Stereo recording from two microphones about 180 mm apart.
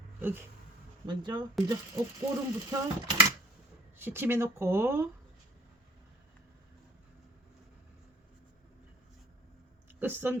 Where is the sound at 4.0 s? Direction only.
10° right (ahead or behind).